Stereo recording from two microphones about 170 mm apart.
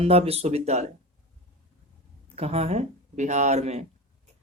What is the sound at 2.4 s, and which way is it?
Speech, 35° right (ahead or behind).